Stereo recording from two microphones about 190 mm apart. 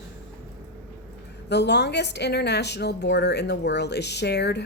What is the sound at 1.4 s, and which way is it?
A woman's voice, 60° left (ahead or behind).